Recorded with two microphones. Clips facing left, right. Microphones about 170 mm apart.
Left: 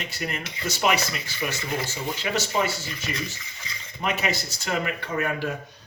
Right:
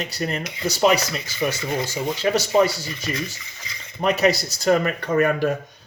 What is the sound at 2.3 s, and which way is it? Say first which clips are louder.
Speech: right 7 dB; 40° right (ahead or behind).